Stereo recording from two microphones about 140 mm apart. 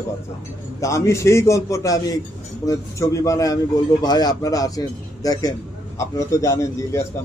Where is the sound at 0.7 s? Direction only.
20° left (ahead or behind).